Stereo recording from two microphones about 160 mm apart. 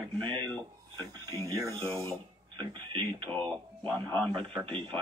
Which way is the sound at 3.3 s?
10° left (ahead or behind).